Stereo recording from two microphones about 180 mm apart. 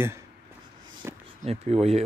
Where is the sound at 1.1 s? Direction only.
15° right (ahead or behind).